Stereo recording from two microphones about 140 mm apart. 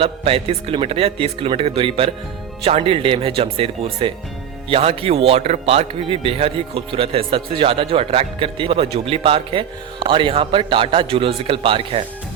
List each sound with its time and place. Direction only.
0.0 s a man's voice: 45° right (ahead or behind)